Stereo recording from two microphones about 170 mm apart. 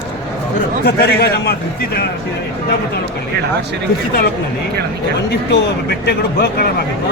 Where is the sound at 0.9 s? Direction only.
65° left (ahead or behind).